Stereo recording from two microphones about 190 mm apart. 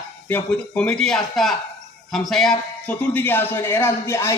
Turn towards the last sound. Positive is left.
turn(degrees=15)  # may be behind; listen again after turning